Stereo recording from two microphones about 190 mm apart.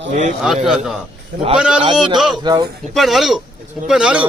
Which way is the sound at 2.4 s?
20° right (ahead or behind).